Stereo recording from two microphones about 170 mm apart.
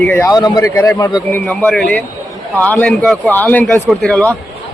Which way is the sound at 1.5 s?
Centre (ahead or behind).